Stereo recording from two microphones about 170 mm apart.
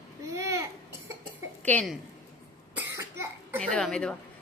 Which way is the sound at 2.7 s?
15° right (ahead or behind).